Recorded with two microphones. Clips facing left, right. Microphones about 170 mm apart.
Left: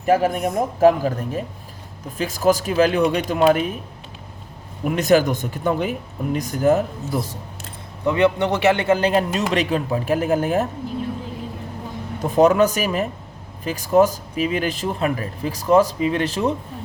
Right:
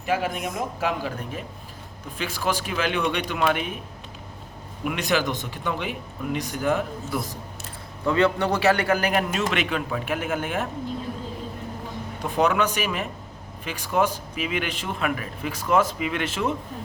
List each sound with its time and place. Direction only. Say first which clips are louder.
0.0 s speech: left 8 dB; 40° left (ahead or behind)
4.8 s speech: left 8 dB; 40° left (ahead or behind)
8.0 s a man's voice: left 3 dB; 20° left (ahead or behind); by 10.7 s 40° left (ahead or behind)
12.2 s speech: left 7 dB; 40° left (ahead or behind)